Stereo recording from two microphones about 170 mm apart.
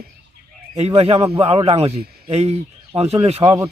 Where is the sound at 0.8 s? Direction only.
35° right (ahead or behind).